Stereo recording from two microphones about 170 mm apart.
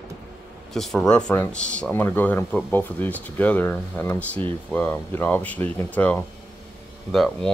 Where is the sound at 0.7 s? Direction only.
Centre (ahead or behind).